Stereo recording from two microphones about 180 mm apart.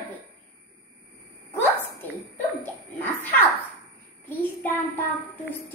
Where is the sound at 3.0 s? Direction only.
10° left (ahead or behind).